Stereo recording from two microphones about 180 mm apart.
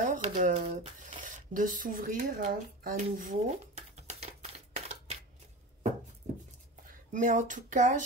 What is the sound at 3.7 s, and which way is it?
Typewriter, 35° right (ahead or behind).